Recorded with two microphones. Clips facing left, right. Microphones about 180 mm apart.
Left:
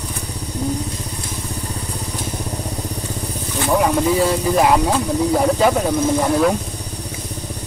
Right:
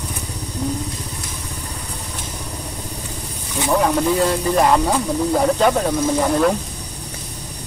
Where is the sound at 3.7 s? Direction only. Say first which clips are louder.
Left 1 dB; 5° left (ahead or behind).